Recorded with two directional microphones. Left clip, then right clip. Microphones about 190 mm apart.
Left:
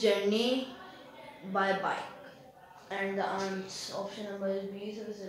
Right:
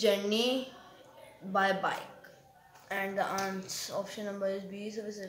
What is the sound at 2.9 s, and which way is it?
Speech, 25° right (ahead or behind).